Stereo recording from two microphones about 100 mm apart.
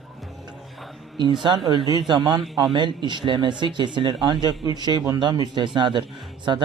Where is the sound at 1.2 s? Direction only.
50° right (ahead or behind).